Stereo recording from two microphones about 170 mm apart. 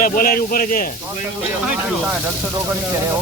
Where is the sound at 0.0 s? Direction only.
55° left (ahead or behind).